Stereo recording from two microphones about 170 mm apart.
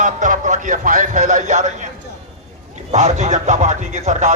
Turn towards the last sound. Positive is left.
turn(degrees=-45)  # may be behind; listen again after turning